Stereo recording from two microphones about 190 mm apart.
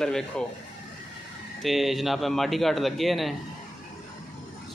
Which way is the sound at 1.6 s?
Centre (ahead or behind).